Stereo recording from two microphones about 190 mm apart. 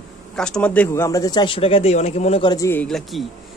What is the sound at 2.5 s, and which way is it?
Speech, 15° left (ahead or behind).